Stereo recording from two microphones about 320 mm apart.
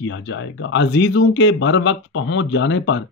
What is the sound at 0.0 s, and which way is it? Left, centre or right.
Speech, left.